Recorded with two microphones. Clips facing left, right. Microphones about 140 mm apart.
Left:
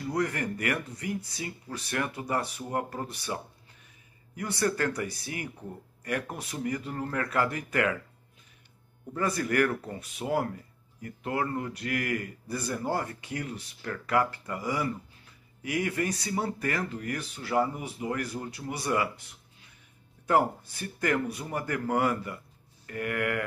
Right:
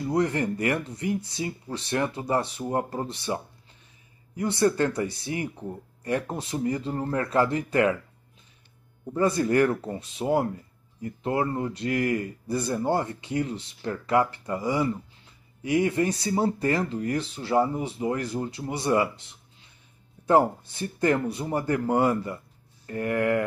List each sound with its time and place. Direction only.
0.0 s speech: 25° right (ahead or behind)
4.4 s speech: 25° right (ahead or behind)
9.0 s speech: 25° right (ahead or behind)